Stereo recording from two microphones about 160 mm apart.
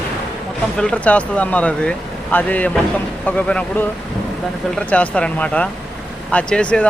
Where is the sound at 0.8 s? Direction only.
5° left (ahead or behind).